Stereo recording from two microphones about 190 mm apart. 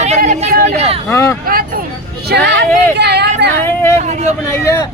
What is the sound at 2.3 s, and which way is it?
Speech, 65° right (ahead or behind).